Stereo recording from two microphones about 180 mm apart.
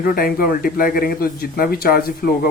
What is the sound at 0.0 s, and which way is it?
Speech, 50° left (ahead or behind).